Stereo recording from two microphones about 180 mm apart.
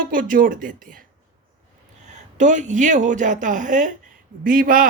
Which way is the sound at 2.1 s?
45° right (ahead or behind).